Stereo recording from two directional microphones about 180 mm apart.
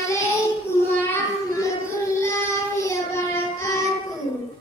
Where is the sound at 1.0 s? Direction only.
15° left (ahead or behind).